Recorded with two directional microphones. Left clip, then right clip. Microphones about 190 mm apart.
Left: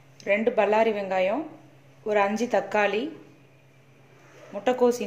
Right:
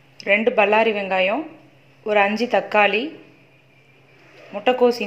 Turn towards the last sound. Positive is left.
turn(degrees=0)  # may be behind; listen again after turning